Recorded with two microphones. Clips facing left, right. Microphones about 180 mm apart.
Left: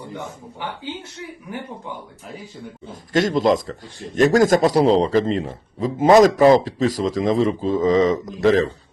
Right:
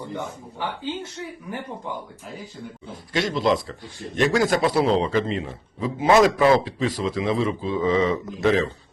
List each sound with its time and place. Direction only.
2.9 s speech: 45° left (ahead or behind)